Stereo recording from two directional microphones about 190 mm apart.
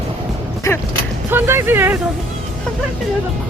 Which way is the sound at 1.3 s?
10° right (ahead or behind).